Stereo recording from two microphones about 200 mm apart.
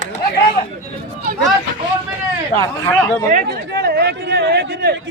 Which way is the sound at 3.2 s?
45° right (ahead or behind).